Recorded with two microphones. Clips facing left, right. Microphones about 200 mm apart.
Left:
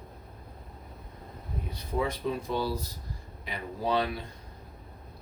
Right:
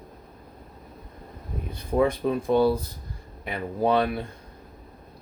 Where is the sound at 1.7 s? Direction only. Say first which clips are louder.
Right 8 dB; 55° right (ahead or behind).